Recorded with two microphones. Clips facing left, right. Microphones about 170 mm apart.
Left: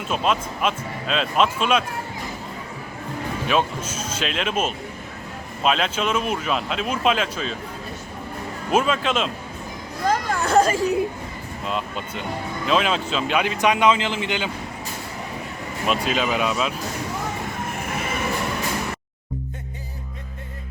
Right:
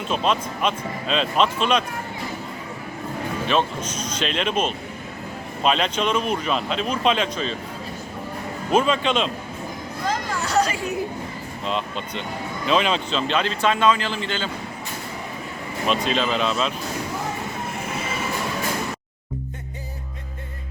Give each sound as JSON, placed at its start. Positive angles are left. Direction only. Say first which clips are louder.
{"t": 0.1, "sound": "speech", "louder": "even", "side_deg": 5}
{"t": 3.4, "sound": "speech", "louder": "even", "side_deg": 10}
{"t": 8.7, "sound": "speech", "louder": "right 1 dB", "side_deg": 5}
{"t": 10.1, "sound": "chatter", "louder": "left 5 dB", "side_deg": 50}
{"t": 11.6, "sound": "speech", "louder": "right 1 dB", "side_deg": 5}
{"t": 15.9, "sound": "speech", "louder": "even", "side_deg": 5}